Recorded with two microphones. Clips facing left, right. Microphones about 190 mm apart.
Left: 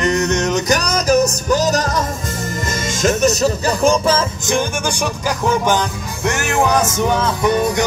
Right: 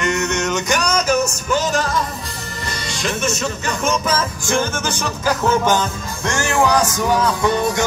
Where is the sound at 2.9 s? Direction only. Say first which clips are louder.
Left 7 dB; 45° left (ahead or behind).